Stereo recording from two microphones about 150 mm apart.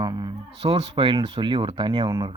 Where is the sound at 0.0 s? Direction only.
30° right (ahead or behind).